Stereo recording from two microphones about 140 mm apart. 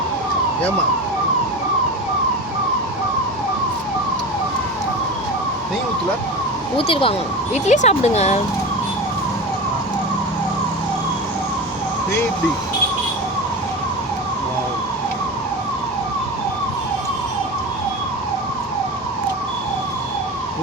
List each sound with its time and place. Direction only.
6.7 s speech: 40° left (ahead or behind)